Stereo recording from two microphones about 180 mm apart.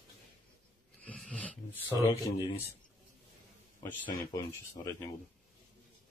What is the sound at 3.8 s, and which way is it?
A man's voice, 10° left (ahead or behind).